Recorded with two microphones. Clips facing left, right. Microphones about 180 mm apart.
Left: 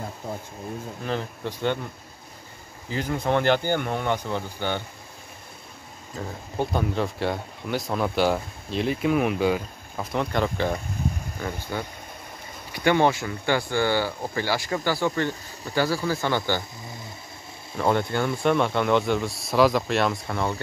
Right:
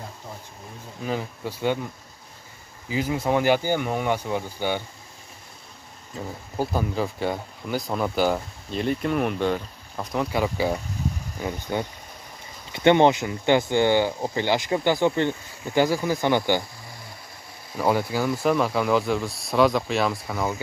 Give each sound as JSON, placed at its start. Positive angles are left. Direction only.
{"t": 1.0, "sound": "speech", "side_deg": -10}
{"t": 2.9, "sound": "speech", "side_deg": -10}
{"t": 6.6, "sound": "speech", "side_deg": -5}
{"t": 17.7, "sound": "speech", "side_deg": -5}